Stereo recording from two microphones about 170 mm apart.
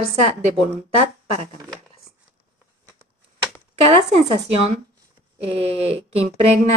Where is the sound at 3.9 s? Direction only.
35° right (ahead or behind).